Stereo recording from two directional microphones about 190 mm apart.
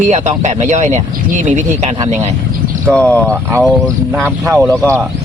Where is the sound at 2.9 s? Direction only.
5° left (ahead or behind).